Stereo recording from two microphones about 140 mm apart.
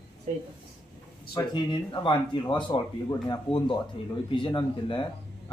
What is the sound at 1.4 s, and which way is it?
A man's voice, 35° left (ahead or behind).